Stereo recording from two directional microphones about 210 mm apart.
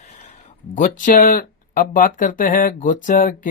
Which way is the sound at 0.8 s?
40° left (ahead or behind).